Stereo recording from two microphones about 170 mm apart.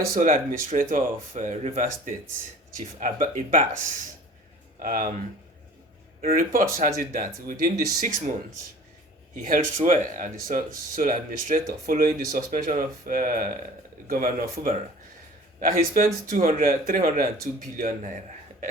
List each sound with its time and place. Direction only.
0.1 s speech: 55° right (ahead or behind)
4.8 s speech: 50° right (ahead or behind)
6.2 s speech: 55° right (ahead or behind)
9.3 s speech: 55° right (ahead or behind)
14.5 s speech: 40° right (ahead or behind)
15.6 s speech: 55° right (ahead or behind)